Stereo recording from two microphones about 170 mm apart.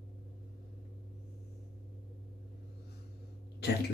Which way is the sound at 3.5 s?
75° left (ahead or behind).